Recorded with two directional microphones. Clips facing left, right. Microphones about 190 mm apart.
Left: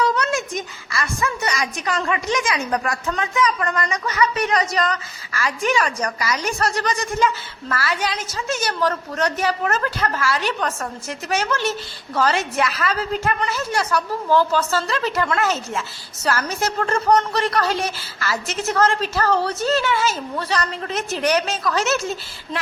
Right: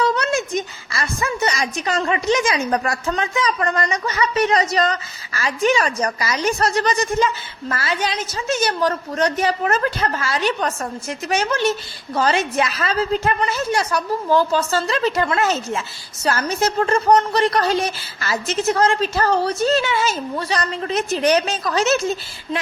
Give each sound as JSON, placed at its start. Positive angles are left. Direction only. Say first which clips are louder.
{"t": 0.0, "sound": "a woman's voice", "louder": "right 1 dB", "side_deg": -25}